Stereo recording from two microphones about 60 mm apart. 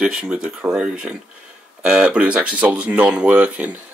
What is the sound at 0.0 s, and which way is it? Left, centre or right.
Speech, centre.